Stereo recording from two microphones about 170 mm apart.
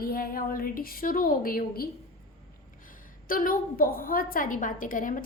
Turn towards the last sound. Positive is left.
turn(degrees=50)  # may be behind; listen again after turning